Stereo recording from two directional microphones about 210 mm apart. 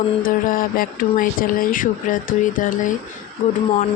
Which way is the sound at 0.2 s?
40° left (ahead or behind).